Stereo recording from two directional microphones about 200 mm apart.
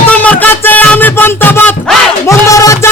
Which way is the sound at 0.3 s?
10° left (ahead or behind).